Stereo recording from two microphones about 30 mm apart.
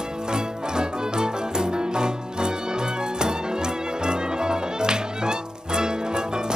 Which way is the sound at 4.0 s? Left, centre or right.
Right.